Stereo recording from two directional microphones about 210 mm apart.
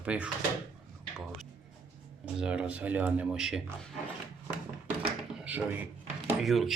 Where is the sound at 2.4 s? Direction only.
5° right (ahead or behind).